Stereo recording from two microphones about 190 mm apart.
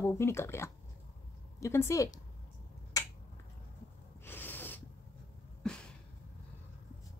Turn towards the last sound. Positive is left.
turn(degrees=5)  # may be behind; listen again after turning